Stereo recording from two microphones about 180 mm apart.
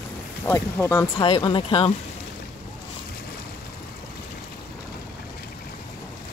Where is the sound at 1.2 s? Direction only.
30° left (ahead or behind).